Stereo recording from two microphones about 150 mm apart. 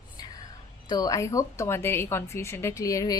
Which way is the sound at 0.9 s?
25° left (ahead or behind).